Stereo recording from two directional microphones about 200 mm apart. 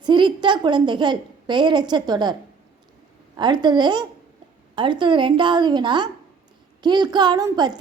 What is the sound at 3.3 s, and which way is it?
A woman's voice, 20° right (ahead or behind).